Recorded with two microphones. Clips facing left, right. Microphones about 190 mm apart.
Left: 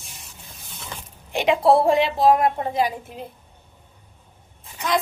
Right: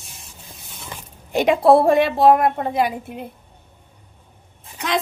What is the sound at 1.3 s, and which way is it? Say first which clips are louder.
A woman's voice: right 3 dB; 50° right (ahead or behind).